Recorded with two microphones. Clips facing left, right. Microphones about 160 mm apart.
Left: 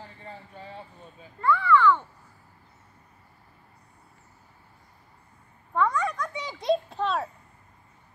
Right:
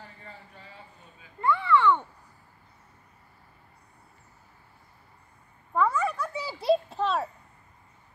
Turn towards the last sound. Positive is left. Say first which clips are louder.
# even
turn(degrees=0)  # may be behind; listen again after turning